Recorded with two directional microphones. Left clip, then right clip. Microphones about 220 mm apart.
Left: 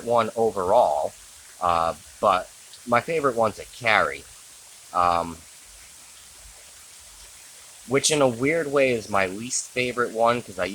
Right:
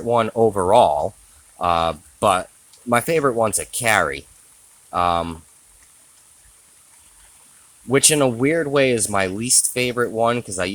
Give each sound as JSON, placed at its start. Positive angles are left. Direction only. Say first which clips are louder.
{"t": 0.1, "sound": "speech", "louder": "right 4 dB", "side_deg": -35}
{"t": 7.9, "sound": "speech", "louder": "right 3 dB", "side_deg": -40}